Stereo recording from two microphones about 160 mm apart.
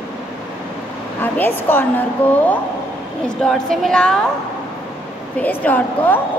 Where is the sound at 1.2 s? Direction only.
15° left (ahead or behind).